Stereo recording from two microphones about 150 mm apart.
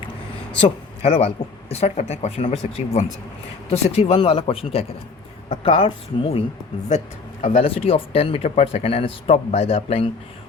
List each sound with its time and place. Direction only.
0.6 s a man's voice: 40° left (ahead or behind)
7.6 s speech: 40° left (ahead or behind)